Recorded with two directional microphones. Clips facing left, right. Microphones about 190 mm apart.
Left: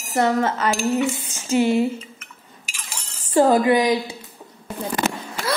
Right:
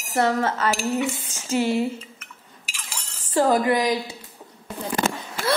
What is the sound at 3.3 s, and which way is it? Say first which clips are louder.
Speech: left 4 dB; 25° left (ahead or behind).